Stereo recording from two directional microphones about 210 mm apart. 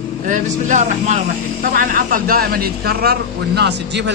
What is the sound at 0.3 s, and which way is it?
A man's voice, 35° right (ahead or behind).